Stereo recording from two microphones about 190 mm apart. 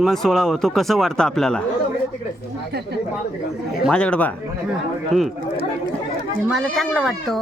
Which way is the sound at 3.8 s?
5° left (ahead or behind).